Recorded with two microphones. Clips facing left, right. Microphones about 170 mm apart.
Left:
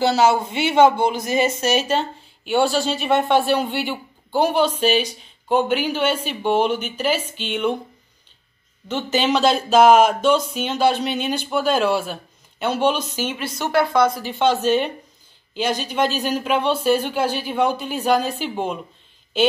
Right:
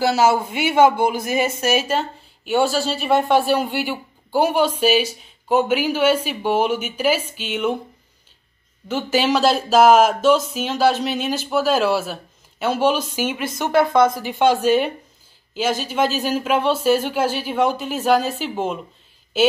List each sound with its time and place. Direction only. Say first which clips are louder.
0.0 s speech: even; 5° right (ahead or behind)
8.8 s speech: right 1 dB; 5° right (ahead or behind); by 14.1 s 20° right (ahead or behind)
14.2 s speech: right 2 dB; 10° right (ahead or behind)